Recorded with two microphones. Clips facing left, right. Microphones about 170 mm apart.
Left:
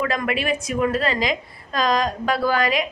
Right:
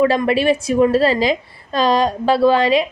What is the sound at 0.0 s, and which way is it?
A woman's voice, 30° right (ahead or behind).